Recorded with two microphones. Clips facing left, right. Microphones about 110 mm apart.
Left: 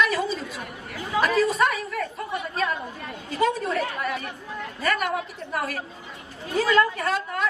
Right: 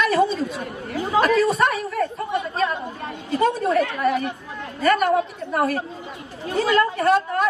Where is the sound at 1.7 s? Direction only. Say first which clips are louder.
Right 5 dB; 30° right (ahead or behind).